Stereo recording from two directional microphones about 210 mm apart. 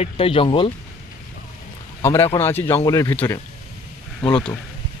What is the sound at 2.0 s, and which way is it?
Speech, 15° left (ahead or behind).